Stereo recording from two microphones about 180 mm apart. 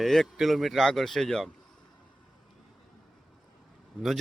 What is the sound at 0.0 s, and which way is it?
Speech, centre (ahead or behind).